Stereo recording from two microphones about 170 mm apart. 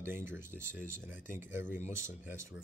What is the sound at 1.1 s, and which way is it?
Speech, 50° left (ahead or behind).